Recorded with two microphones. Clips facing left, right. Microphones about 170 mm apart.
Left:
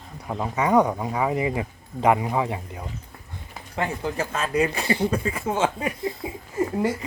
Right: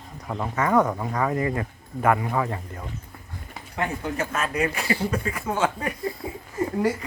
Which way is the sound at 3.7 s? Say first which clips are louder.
Left 1 dB; 30° left (ahead or behind).